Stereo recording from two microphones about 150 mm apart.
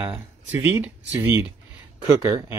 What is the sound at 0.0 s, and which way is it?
Speech, 10° right (ahead or behind).